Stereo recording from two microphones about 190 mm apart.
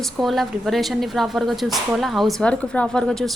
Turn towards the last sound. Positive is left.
turn(degrees=5)  # may be behind; listen again after turning